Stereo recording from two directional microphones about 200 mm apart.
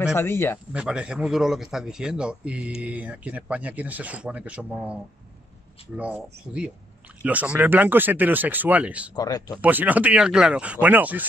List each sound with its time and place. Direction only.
0.0 s speech: 15° left (ahead or behind)
0.7 s a man's voice: 5° right (ahead or behind)
5.9 s speech: 10° right (ahead or behind)
9.1 s speech: 20° left (ahead or behind)
9.6 s speech: 10° right (ahead or behind)